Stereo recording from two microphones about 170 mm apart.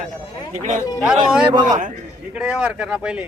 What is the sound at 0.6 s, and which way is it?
Speech, 45° right (ahead or behind).